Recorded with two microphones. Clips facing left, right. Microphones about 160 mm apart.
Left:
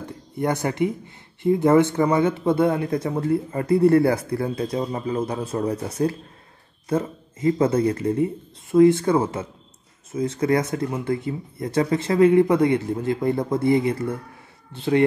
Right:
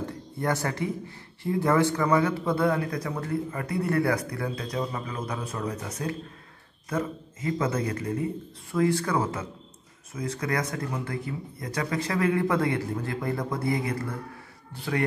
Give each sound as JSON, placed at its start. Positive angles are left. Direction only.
{"t": 0.4, "sound": "speech", "side_deg": 20}